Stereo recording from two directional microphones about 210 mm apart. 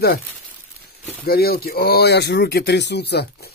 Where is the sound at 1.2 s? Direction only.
45° left (ahead or behind).